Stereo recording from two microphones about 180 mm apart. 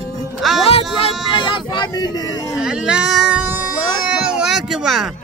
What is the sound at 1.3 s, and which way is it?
Vehicle, 25° left (ahead or behind).